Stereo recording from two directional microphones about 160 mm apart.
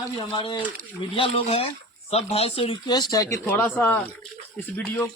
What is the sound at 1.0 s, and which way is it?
Speech, 35° left (ahead or behind).